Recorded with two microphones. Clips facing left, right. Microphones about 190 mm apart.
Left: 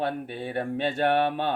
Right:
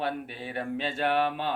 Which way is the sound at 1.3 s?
60° left (ahead or behind).